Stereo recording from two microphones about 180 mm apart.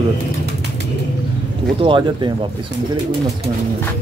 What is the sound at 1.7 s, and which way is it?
Speech, 30° right (ahead or behind).